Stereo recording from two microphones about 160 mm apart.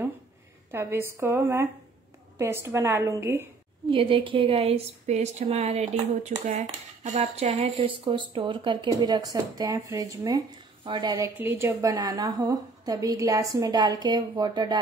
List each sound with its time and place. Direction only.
0.7 s a woman's voice: 15° right (ahead or behind)
3.9 s a woman's voice: 35° right (ahead or behind)